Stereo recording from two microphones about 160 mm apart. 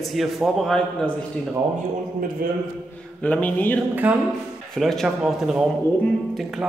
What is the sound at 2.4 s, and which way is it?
Speech, 65° right (ahead or behind).